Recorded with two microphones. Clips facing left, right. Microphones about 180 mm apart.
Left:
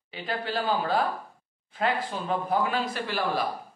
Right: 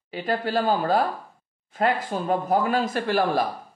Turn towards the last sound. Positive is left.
turn(degrees=-50)  # may be behind; listen again after turning